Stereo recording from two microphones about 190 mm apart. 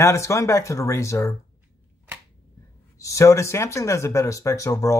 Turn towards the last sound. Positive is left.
turn(degrees=15)  # may be behind; listen again after turning